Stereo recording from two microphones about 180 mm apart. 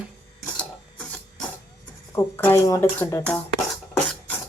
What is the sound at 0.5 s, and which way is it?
Filing, 5° left (ahead or behind).